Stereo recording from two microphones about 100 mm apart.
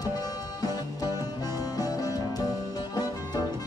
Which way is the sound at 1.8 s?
40° left (ahead or behind).